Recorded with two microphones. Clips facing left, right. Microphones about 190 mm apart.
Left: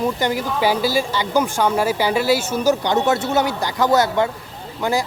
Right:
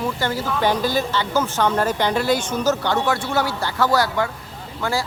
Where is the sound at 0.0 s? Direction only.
15° left (ahead or behind).